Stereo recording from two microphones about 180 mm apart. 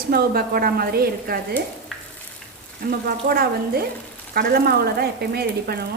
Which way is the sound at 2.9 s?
60° right (ahead or behind).